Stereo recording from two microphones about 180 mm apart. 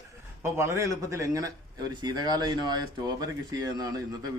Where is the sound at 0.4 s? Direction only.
15° right (ahead or behind).